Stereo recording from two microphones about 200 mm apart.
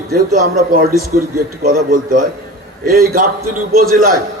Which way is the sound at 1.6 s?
45° right (ahead or behind).